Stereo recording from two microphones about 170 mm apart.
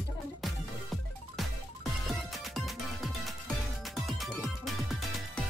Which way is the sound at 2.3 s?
Centre (ahead or behind).